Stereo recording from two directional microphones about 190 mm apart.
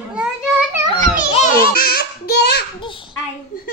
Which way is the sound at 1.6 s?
50° left (ahead or behind).